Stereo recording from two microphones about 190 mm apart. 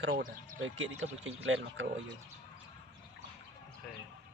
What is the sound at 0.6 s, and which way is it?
Speech, 90° right.